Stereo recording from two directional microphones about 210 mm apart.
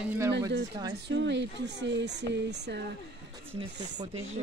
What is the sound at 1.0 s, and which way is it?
Speech, 60° right (ahead or behind).